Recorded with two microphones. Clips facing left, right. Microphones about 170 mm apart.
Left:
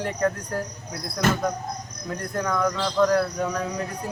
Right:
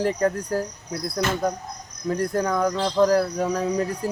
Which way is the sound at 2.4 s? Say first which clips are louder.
Left 1 dB; 35° right (ahead or behind).